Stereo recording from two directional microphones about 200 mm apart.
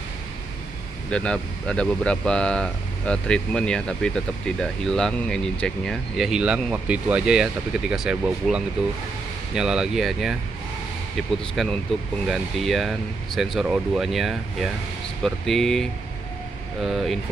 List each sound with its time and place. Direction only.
1.1 s speech: 5° left (ahead or behind)